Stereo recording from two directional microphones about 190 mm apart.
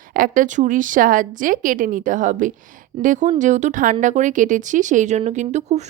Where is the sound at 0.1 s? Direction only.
45° right (ahead or behind).